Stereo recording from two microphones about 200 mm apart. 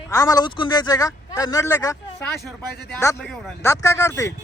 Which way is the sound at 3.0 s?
5° left (ahead or behind).